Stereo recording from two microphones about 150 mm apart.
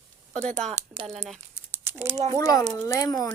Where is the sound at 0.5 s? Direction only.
50° right (ahead or behind).